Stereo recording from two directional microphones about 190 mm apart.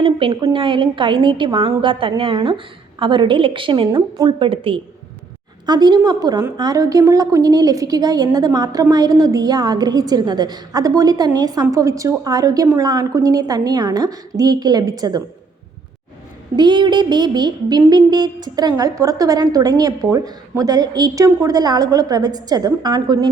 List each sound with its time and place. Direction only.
0.0 s a sound: 30° right (ahead or behind)
0.5 s a woman's voice: 25° right (ahead or behind)
16.6 s a woman's voice: 25° right (ahead or behind)